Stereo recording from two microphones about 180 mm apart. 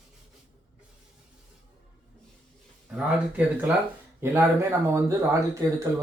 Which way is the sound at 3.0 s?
5° right (ahead or behind).